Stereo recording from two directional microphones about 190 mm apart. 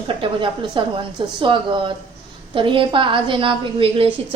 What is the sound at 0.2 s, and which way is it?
A woman's voice, 25° right (ahead or behind).